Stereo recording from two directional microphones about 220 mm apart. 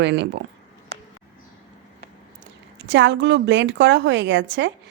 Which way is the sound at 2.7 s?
55° right (ahead or behind).